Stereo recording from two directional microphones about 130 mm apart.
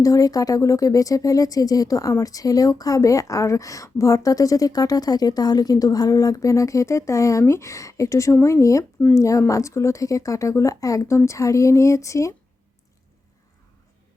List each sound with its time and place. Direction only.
0.0 s speech: 25° left (ahead or behind)